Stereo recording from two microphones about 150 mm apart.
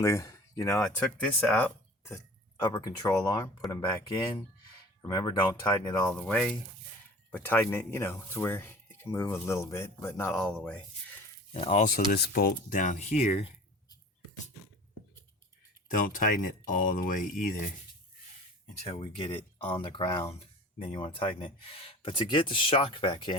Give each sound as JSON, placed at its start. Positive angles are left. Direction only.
{"t": 0.0, "sound": "speech", "side_deg": 20}
{"t": 0.8, "sound": "speech", "side_deg": 10}
{"t": 2.6, "sound": "speech", "side_deg": 25}
{"t": 6.2, "sound": "speech", "side_deg": 5}
{"t": 10.3, "sound": "speech", "side_deg": 5}
{"t": 11.5, "sound": "speech", "side_deg": 40}
{"t": 12.1, "sound": "speech", "side_deg": 85}
{"t": 15.9, "sound": "speech", "side_deg": 65}
{"t": 18.8, "sound": "speech", "side_deg": 40}